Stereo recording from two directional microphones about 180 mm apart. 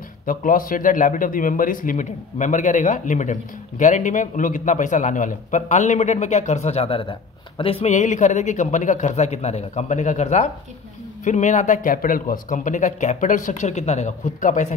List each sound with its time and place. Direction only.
0.3 s a man's voice: 50° left (ahead or behind)